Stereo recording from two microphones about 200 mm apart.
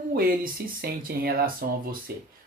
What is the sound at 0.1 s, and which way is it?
Speech, 45° right (ahead or behind).